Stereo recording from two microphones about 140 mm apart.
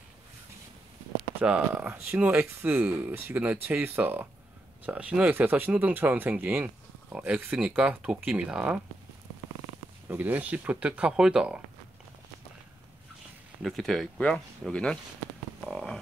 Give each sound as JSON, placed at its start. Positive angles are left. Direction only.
{"t": 1.4, "sound": "speech", "side_deg": -10}
{"t": 10.0, "sound": "speech", "side_deg": -15}
{"t": 13.6, "sound": "speech", "side_deg": 0}
{"t": 15.7, "sound": "a sound", "side_deg": 5}